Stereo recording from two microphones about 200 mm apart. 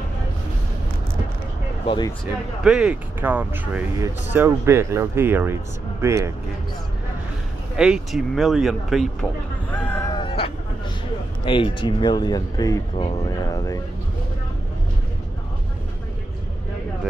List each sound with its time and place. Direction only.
1.9 s speech: 20° left (ahead or behind)
2.6 s speech: 5° right (ahead or behind)
7.7 s speech: 5° right (ahead or behind)
9.7 s a sound: 10° left (ahead or behind)
10.1 s vehicle: 25° left (ahead or behind)
11.4 s speech: 25° left (ahead or behind)